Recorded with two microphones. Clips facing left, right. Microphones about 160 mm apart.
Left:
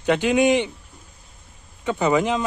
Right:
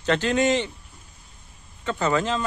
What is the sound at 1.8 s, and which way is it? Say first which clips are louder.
Speech: left 4 dB; 15° left (ahead or behind).